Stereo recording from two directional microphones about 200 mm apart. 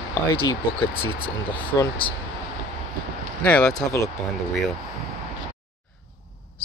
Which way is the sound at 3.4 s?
5° left (ahead or behind).